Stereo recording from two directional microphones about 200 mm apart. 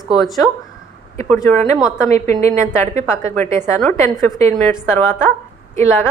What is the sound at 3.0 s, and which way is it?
Speech, 15° left (ahead or behind).